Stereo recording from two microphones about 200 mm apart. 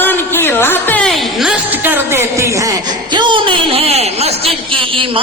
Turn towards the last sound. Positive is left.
turn(degrees=-25)  # may be behind; listen again after turning